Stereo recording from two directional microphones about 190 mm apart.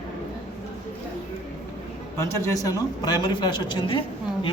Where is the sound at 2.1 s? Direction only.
15° left (ahead or behind).